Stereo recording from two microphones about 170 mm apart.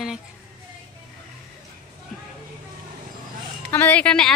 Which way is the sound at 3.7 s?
10° left (ahead or behind).